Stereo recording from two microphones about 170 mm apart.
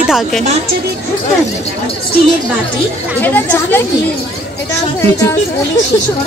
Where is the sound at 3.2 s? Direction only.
10° left (ahead or behind).